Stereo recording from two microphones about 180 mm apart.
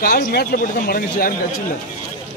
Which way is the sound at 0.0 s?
60° left (ahead or behind).